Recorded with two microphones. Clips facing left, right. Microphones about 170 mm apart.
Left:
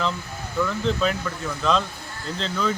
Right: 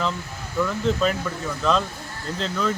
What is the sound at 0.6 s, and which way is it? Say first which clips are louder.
Speech: right 1 dB; 5° right (ahead or behind).